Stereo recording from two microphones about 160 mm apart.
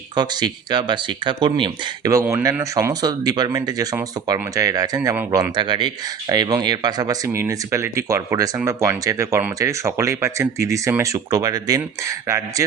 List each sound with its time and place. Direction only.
0.2 s speech: 25° right (ahead or behind)
2.1 s speech: 20° right (ahead or behind)